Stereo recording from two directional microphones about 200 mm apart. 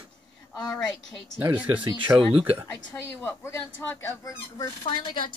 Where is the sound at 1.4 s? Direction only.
15° right (ahead or behind).